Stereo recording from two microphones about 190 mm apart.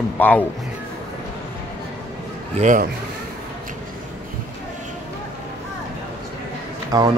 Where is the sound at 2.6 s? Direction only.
40° right (ahead or behind).